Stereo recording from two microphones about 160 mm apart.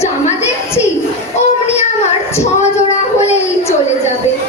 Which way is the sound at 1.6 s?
45° left (ahead or behind).